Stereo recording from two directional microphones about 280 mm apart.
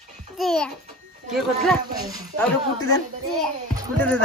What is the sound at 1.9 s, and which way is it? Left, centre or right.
Speech, centre.